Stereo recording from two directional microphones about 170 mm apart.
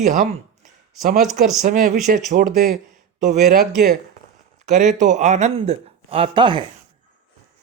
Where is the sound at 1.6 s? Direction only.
50° right (ahead or behind).